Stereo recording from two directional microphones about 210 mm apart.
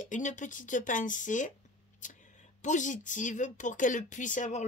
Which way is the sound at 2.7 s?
35° left (ahead or behind).